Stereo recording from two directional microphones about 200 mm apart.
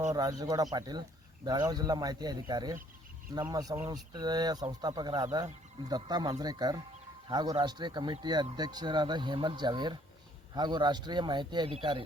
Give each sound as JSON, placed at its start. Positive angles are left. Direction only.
{"t": 0.1, "sound": "speech", "side_deg": -20}